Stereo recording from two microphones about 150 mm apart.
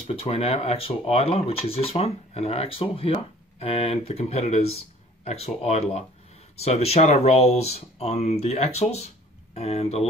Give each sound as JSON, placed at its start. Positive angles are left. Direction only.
{"t": 0.0, "sound": "speech", "side_deg": 40}